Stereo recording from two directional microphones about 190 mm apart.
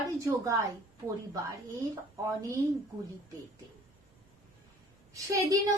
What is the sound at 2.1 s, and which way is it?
Speech, 15° right (ahead or behind).